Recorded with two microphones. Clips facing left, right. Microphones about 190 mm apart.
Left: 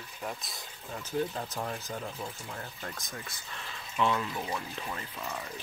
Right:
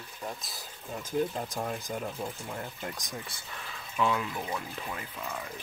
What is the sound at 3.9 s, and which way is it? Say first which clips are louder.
Speech: even; 5° right (ahead or behind).